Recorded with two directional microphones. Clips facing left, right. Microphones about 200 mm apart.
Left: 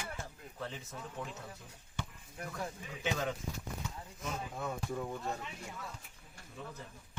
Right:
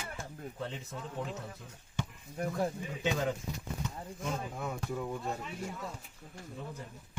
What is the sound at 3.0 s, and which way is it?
Speech, 25° right (ahead or behind).